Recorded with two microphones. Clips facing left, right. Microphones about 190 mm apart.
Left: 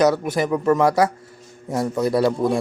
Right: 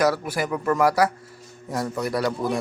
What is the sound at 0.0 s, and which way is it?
Speech, 20° left (ahead or behind).